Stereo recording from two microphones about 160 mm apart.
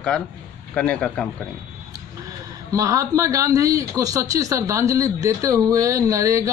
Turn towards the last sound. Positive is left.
turn(degrees=-20)  # may be behind; listen again after turning